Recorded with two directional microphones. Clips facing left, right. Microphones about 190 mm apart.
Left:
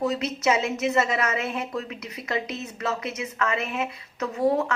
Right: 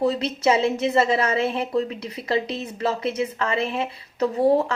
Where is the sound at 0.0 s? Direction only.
30° right (ahead or behind).